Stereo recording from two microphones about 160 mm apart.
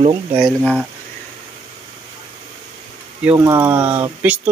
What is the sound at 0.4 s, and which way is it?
Speech, 5° right (ahead or behind).